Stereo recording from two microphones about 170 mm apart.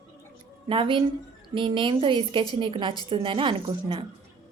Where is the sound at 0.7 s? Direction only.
30° right (ahead or behind).